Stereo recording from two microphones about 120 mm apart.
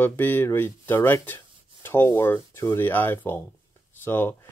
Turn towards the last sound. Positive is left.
turn(degrees=15)  # may be behind; listen again after turning